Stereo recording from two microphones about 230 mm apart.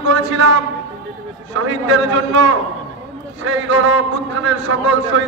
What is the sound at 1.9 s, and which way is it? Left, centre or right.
A man's voice, right.